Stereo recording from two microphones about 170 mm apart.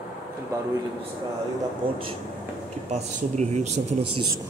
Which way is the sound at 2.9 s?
40° right (ahead or behind).